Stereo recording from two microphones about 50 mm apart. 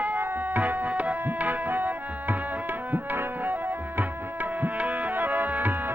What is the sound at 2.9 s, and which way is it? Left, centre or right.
Music, right.